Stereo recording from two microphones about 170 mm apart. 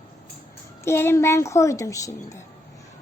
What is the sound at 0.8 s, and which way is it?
A child's voice, 15° left (ahead or behind).